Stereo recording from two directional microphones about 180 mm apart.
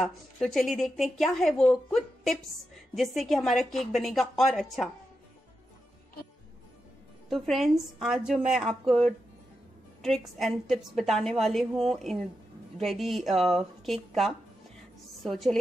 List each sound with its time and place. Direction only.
0.0 s a woman's voice: centre (ahead or behind)
7.2 s a woman's voice: centre (ahead or behind)